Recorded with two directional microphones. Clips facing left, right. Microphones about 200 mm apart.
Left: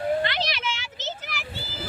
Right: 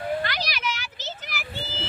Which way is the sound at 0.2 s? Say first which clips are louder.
Left 3 dB; 25° left (ahead or behind).